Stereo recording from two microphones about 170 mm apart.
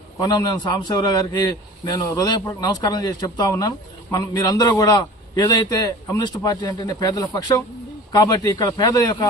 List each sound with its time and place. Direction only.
0.2 s a man's voice: 25° left (ahead or behind)